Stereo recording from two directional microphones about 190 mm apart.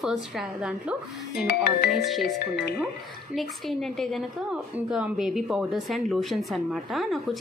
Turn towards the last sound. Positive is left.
turn(degrees=0)  # may be behind; listen again after turning